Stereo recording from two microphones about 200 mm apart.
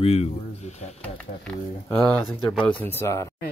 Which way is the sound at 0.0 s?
30° left (ahead or behind).